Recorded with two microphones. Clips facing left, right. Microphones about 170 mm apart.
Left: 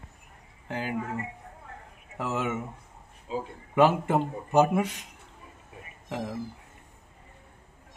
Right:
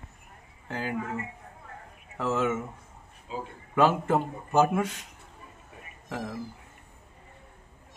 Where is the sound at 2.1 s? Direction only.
15° left (ahead or behind).